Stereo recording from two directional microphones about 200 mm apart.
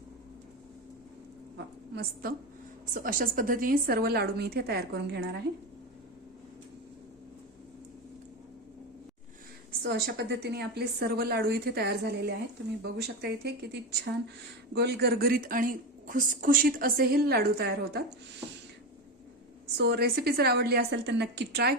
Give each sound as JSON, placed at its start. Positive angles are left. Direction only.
{"t": 1.5, "sound": "a sound", "side_deg": -50}
{"t": 2.9, "sound": "a woman's voice", "side_deg": -45}
{"t": 9.8, "sound": "a woman's voice", "side_deg": -55}
{"t": 19.7, "sound": "a woman's voice", "side_deg": -55}